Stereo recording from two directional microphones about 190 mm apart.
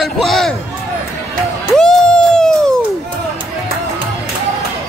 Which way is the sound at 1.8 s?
5° left (ahead or behind).